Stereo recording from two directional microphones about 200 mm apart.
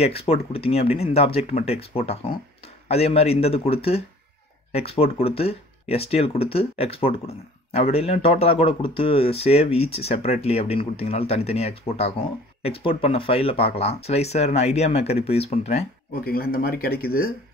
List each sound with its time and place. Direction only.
0.0 s speech: 30° left (ahead or behind)
16.3 s speech: 45° left (ahead or behind)